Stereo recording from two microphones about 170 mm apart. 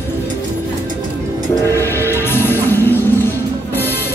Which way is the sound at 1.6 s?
15° left (ahead or behind).